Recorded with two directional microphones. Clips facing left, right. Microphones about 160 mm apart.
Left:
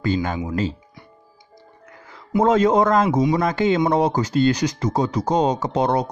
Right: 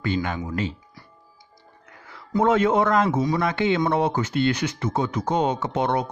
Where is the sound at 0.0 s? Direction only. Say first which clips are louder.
Left 3 dB; 40° left (ahead or behind).